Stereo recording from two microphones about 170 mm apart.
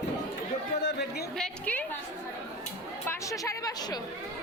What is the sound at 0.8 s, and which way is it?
Chatter, 75° left (ahead or behind).